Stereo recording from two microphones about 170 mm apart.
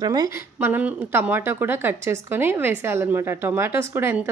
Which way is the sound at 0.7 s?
10° right (ahead or behind).